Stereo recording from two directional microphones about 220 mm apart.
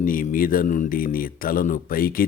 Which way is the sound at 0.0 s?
40° left (ahead or behind).